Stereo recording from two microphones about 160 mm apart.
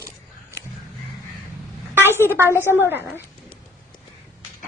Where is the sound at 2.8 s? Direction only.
15° right (ahead or behind).